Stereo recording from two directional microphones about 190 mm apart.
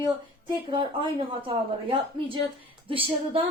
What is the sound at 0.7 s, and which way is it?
Speech, 25° right (ahead or behind).